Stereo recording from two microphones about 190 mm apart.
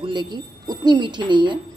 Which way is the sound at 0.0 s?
25° right (ahead or behind).